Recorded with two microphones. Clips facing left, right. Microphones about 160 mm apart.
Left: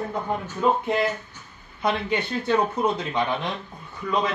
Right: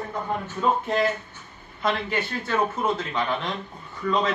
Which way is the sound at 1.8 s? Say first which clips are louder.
Left 1 dB; 20° left (ahead or behind).